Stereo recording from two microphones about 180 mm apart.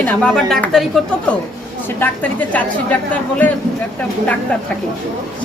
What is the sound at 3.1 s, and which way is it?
Speech, 10° left (ahead or behind).